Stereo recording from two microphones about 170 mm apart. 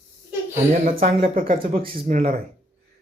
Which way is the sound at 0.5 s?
50° right (ahead or behind).